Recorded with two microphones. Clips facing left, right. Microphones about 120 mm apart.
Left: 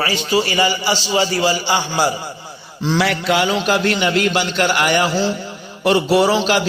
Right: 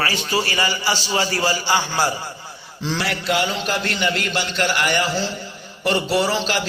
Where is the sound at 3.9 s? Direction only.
55° left (ahead or behind).